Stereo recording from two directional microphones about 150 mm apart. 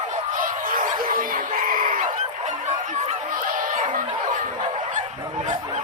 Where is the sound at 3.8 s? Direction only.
60° right (ahead or behind).